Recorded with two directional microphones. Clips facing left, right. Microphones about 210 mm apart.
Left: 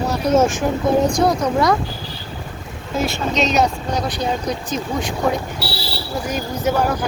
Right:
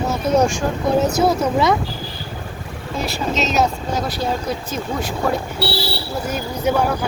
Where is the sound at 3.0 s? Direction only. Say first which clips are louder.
Left 2 dB; centre (ahead or behind).